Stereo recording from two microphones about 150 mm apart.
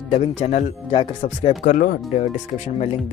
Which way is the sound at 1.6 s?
70° left (ahead or behind).